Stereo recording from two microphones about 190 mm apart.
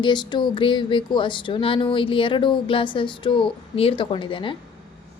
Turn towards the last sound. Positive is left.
turn(degrees=25)  # may be behind; listen again after turning